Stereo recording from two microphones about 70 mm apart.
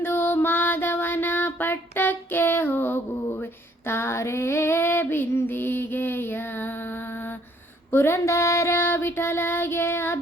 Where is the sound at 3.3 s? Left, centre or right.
Left.